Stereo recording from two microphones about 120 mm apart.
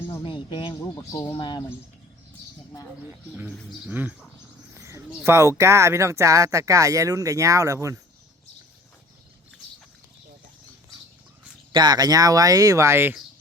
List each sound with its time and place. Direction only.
0.1 s speech: 45° left (ahead or behind)
0.8 s speech: 25° left (ahead or behind)
1.2 s speech: 40° left (ahead or behind)
3.1 s speech: 15° right (ahead or behind)
4.7 s speech: 25° right (ahead or behind)
11.7 s speech: 35° right (ahead or behind); by 13.2 s 20° right (ahead or behind)